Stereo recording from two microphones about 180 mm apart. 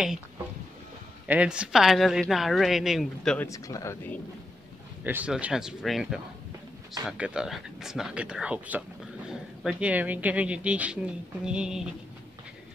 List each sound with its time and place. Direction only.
1.2 s a woman's voice: 5° right (ahead or behind)
3.4 s speech: 20° left (ahead or behind)
5.0 s a woman's voice: 10° right (ahead or behind)